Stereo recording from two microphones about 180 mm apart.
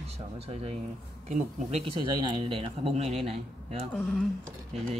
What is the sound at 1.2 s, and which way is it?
Speech, 35° right (ahead or behind).